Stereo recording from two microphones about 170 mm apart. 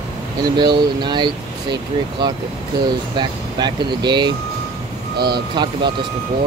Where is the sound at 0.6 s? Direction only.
25° right (ahead or behind).